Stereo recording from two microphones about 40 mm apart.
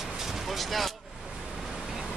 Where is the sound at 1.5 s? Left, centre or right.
Centre.